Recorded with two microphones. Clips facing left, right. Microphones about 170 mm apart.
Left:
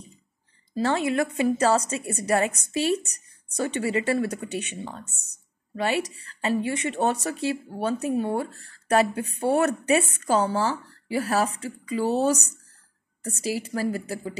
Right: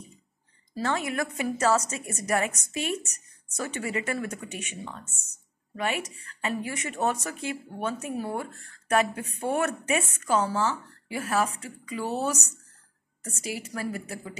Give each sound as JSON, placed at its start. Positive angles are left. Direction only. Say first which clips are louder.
{"t": 0.8, "sound": "a woman's voice", "louder": "left 5 dB", "side_deg": 30}